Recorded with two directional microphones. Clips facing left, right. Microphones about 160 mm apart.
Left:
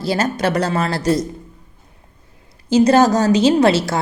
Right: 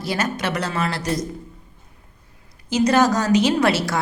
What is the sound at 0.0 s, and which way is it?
Speech, 30° left (ahead or behind).